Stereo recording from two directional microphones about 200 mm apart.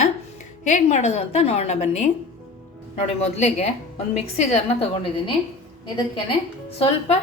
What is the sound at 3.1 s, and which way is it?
A woman's voice, 35° left (ahead or behind).